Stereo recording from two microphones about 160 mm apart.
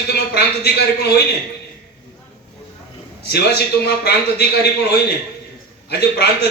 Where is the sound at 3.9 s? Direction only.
90° left.